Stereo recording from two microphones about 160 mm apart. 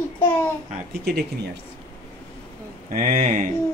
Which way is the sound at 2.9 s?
55° right (ahead or behind).